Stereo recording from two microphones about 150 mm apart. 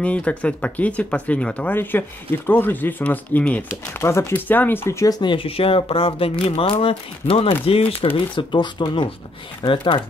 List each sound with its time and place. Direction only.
0.0 s speech: 10° left (ahead or behind)
5.2 s speech: 35° left (ahead or behind)